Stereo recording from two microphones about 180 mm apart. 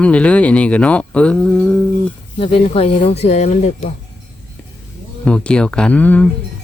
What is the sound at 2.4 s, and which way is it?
Speech, 30° left (ahead or behind).